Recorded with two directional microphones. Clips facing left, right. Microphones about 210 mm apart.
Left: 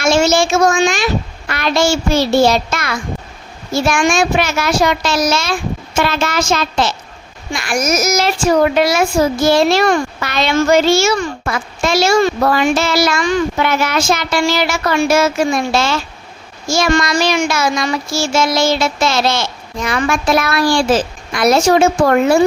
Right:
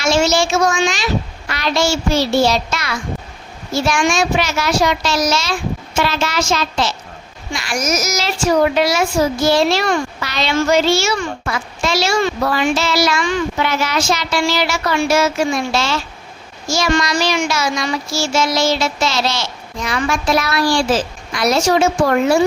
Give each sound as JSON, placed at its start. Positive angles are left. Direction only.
{"t": 0.0, "sound": "a child's voice", "side_deg": 50}